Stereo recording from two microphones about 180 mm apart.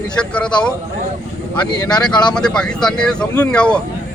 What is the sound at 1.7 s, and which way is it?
Speech, 20° left (ahead or behind).